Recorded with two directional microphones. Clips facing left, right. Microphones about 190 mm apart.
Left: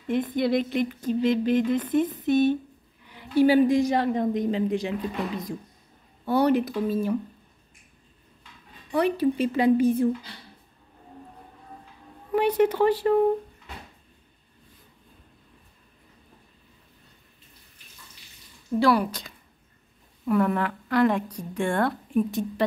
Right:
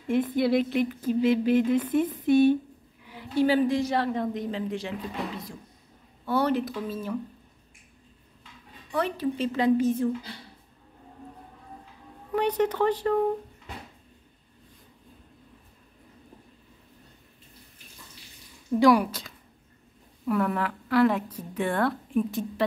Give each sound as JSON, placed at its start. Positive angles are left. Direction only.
{"t": 0.0, "sound": "a sound", "side_deg": -10}
{"t": 3.3, "sound": "a woman's voice", "side_deg": 10}
{"t": 6.2, "sound": "a woman's voice", "side_deg": 15}
{"t": 8.9, "sound": "a woman's voice", "side_deg": 15}
{"t": 12.3, "sound": "a woman's voice", "side_deg": 10}
{"t": 18.8, "sound": "a sound", "side_deg": -15}
{"t": 20.2, "sound": "a woman's voice", "side_deg": 0}